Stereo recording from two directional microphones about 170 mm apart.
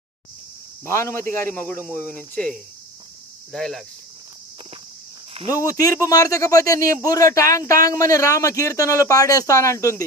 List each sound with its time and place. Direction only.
0.8 s speech: 15° left (ahead or behind)
5.5 s speech: 20° left (ahead or behind)